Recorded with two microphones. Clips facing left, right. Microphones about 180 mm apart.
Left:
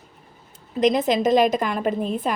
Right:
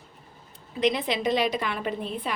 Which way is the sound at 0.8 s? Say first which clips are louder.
Left 6 dB; 45° left (ahead or behind).